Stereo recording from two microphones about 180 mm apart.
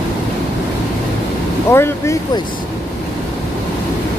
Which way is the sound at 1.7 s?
15° left (ahead or behind).